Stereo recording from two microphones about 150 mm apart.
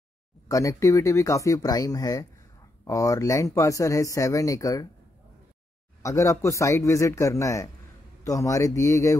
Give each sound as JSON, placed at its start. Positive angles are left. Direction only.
{"t": 0.5, "sound": "speech", "side_deg": 20}
{"t": 6.0, "sound": "speech", "side_deg": 20}